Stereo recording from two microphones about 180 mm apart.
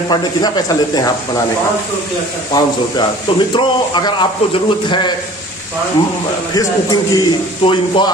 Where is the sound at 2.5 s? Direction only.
25° left (ahead or behind).